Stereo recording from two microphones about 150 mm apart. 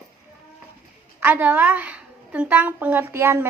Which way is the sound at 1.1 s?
15° right (ahead or behind).